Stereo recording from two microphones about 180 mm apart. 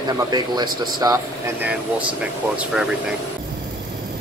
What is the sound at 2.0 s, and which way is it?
Speech, 5° right (ahead or behind).